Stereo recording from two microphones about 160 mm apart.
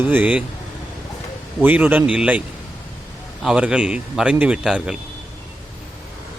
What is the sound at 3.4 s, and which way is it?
Speech, 5° right (ahead or behind).